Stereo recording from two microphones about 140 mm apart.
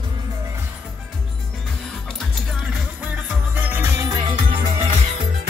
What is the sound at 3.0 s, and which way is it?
Music, 10° right (ahead or behind).